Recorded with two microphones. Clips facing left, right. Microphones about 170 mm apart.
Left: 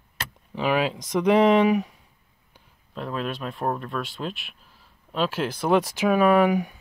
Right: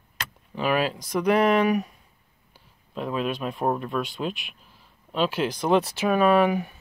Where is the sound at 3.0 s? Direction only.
5° right (ahead or behind); by 6.8 s 15° left (ahead or behind).